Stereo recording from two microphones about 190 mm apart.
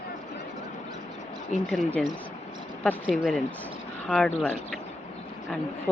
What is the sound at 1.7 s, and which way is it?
Speech, 5° left (ahead or behind).